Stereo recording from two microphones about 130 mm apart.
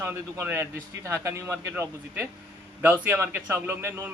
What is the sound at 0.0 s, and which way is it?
Speech, 20° right (ahead or behind).